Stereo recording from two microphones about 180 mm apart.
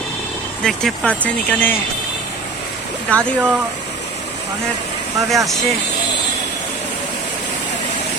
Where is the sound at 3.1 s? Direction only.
5° left (ahead or behind).